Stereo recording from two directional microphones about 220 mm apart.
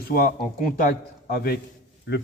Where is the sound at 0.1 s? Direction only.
40° left (ahead or behind).